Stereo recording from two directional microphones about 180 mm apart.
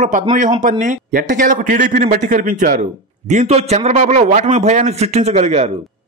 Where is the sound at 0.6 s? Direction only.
45° right (ahead or behind).